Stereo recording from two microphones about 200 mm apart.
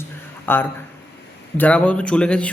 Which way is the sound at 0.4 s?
10° left (ahead or behind).